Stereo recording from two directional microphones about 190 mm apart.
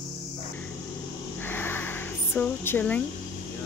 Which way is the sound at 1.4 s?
10° left (ahead or behind).